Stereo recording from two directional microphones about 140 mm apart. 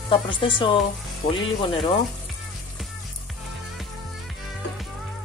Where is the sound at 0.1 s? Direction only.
35° left (ahead or behind).